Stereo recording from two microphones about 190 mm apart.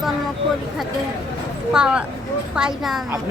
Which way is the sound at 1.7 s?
5° right (ahead or behind).